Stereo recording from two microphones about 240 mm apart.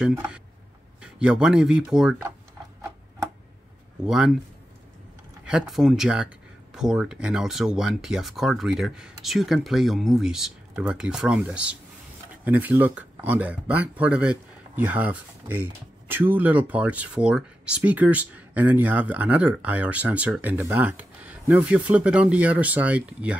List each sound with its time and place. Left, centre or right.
0.0 s speech: centre
4.0 s speech: centre
5.4 s speech: centre